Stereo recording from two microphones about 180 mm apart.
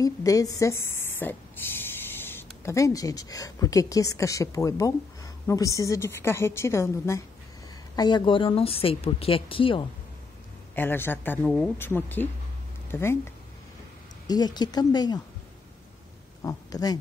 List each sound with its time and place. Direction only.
0.0 s a woman's voice: 20° left (ahead or behind)
10.7 s speech: 10° left (ahead or behind)
16.4 s speech: 20° left (ahead or behind)